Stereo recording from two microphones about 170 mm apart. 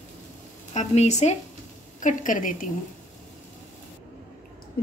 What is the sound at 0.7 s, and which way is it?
A woman's voice, 40° left (ahead or behind).